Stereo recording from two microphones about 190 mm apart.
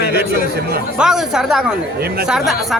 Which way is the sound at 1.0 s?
Centre (ahead or behind).